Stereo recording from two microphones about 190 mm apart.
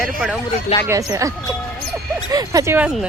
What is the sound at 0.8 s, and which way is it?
Speech, 15° right (ahead or behind).